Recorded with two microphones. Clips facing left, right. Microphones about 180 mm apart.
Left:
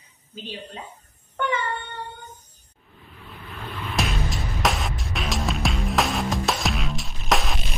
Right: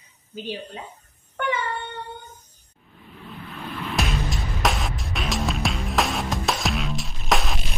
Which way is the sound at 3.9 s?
Centre (ahead or behind).